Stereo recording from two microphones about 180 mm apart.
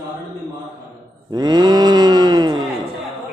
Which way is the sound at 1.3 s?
20° right (ahead or behind).